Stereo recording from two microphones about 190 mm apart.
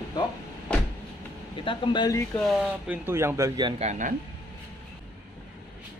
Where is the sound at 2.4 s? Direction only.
Centre (ahead or behind); by 3.7 s 20° right (ahead or behind).